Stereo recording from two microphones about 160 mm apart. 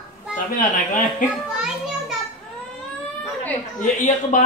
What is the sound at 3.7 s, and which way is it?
Speech, 55° left (ahead or behind).